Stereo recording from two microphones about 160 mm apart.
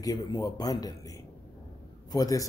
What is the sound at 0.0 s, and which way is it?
A man's voice, 25° left (ahead or behind).